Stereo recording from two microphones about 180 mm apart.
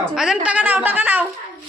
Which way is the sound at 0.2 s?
5° right (ahead or behind).